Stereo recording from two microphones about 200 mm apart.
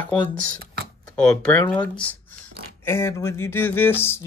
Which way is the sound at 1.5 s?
5° left (ahead or behind).